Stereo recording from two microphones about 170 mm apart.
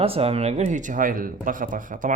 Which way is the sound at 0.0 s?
35° right (ahead or behind).